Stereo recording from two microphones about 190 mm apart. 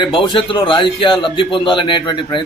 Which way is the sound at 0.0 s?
25° left (ahead or behind).